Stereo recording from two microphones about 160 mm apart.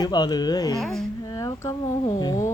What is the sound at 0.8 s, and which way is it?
Speech, centre (ahead or behind).